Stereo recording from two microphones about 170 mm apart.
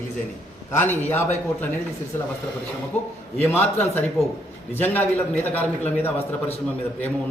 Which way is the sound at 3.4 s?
10° left (ahead or behind).